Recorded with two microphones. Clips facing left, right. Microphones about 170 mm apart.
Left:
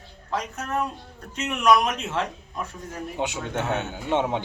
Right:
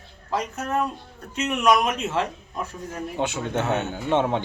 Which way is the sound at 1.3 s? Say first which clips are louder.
Even; centre (ahead or behind).